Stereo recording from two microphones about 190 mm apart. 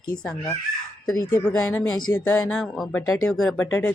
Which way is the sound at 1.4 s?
5° left (ahead or behind).